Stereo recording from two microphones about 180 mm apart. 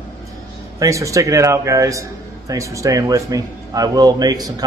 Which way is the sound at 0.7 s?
15° right (ahead or behind).